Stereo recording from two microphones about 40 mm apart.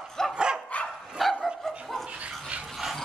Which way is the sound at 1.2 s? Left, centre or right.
Centre.